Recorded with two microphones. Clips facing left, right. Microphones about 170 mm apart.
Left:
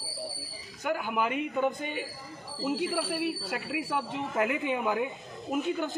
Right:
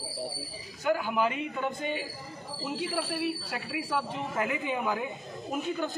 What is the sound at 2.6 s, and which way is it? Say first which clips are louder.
Speech: left 3 dB; 15° left (ahead or behind).